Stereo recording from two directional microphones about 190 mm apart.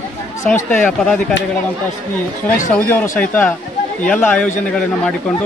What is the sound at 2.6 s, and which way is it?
Speech, 45° left (ahead or behind).